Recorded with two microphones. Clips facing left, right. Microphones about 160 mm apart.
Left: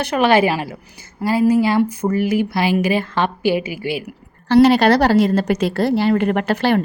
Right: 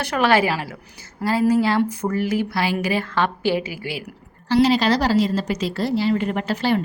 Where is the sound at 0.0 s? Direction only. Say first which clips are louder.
Left 4 dB; 20° left (ahead or behind).